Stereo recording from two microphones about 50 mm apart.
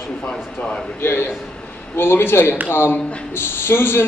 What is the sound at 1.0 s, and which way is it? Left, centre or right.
A man's voice, left.